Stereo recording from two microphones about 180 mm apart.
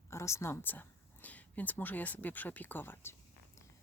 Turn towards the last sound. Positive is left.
turn(degrees=15)  # may be behind; listen again after turning